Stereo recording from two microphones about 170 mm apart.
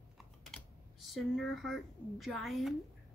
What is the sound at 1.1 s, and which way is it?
A woman's voice, centre (ahead or behind).